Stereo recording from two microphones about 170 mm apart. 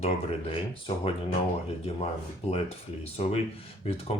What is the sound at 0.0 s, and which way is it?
Speech, 35° left (ahead or behind).